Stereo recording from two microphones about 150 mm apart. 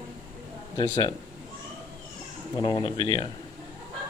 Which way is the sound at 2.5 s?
30° left (ahead or behind).